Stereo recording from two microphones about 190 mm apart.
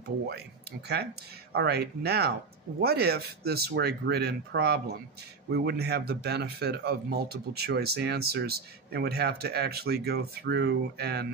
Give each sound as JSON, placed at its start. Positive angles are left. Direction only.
{"t": 1.5, "sound": "speech", "side_deg": -60}